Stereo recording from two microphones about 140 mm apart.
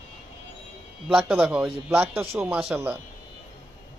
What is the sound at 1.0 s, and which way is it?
A man's voice, 5° right (ahead or behind).